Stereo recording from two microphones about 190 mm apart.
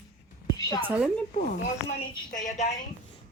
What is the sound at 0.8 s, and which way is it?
Speech, 10° right (ahead or behind).